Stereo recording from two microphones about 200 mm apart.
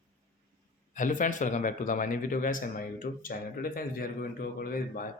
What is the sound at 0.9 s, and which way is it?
Speech, 40° left (ahead or behind).